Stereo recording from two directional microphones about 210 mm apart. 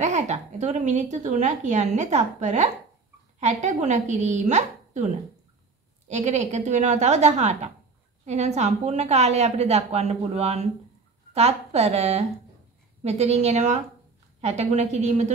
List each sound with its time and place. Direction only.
0.0 s a woman's voice: 35° right (ahead or behind)